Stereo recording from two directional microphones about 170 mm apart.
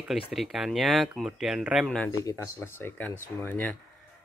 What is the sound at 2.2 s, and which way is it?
Speech, 15° left (ahead or behind).